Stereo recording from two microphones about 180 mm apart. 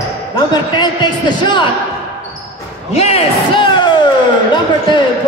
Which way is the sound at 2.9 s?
35° left (ahead or behind).